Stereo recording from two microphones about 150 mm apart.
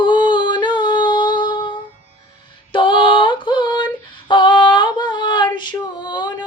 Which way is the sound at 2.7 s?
30° left (ahead or behind).